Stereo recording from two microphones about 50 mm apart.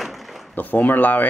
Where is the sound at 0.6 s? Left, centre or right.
Left.